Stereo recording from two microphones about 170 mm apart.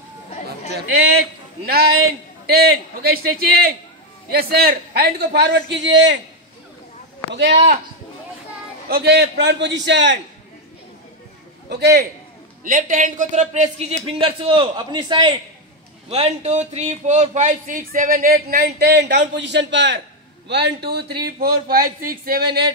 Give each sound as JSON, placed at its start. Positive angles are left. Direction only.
{"t": 2.4, "sound": "a man's voice", "side_deg": -65}
{"t": 7.3, "sound": "a man's voice", "side_deg": -85}
{"t": 8.8, "sound": "a man's voice", "side_deg": -70}
{"t": 11.7, "sound": "a man's voice", "side_deg": -75}
{"t": 12.6, "sound": "a man's voice", "side_deg": -50}
{"t": 16.1, "sound": "a man's voice", "side_deg": -40}